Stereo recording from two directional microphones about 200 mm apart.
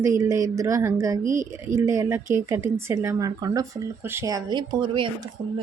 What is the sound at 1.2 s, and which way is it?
Speech, 40° right (ahead or behind).